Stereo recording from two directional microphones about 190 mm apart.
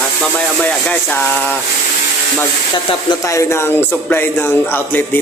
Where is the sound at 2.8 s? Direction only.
20° left (ahead or behind).